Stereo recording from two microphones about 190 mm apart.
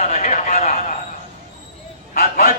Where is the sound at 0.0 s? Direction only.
40° left (ahead or behind).